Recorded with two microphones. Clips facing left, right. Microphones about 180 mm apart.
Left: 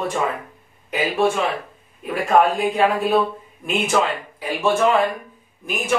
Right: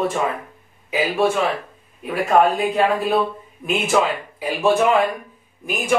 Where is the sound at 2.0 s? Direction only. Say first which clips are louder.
Right 1 dB; centre (ahead or behind).